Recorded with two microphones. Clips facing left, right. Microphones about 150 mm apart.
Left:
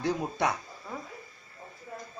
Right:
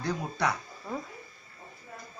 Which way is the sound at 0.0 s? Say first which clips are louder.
Left 2 dB; 20° left (ahead or behind).